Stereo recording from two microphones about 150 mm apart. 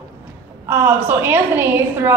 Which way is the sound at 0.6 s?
15° right (ahead or behind).